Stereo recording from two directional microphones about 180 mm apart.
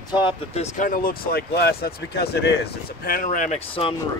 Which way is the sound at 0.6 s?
45° left (ahead or behind).